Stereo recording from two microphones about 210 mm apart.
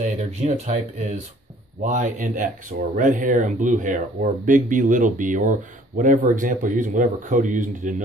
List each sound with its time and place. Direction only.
0.0 s speech: 35° right (ahead or behind)